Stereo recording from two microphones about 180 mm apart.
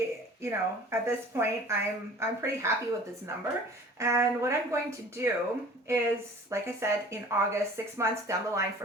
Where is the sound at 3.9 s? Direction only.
15° right (ahead or behind).